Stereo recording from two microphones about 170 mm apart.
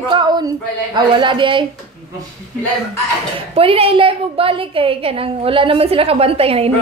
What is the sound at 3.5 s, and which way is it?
A woman's voice, 35° right (ahead or behind).